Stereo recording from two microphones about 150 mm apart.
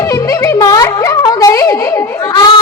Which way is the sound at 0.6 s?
25° left (ahead or behind).